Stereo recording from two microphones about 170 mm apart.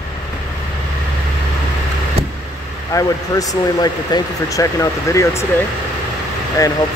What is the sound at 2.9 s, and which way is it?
Speech, 20° left (ahead or behind).